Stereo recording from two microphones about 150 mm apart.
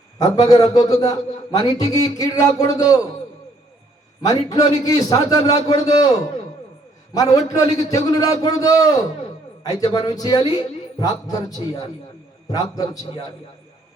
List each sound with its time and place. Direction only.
0.2 s a man's voice: 25° left (ahead or behind)
4.2 s a man's voice: 25° left (ahead or behind)